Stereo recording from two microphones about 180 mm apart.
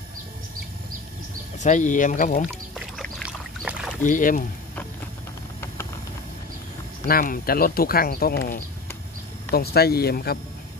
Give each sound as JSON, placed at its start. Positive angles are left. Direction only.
{"t": 1.6, "sound": "speech", "side_deg": 45}
{"t": 3.6, "sound": "rowboat", "side_deg": -5}
{"t": 4.0, "sound": "speech", "side_deg": 45}
{"t": 7.1, "sound": "speech", "side_deg": 55}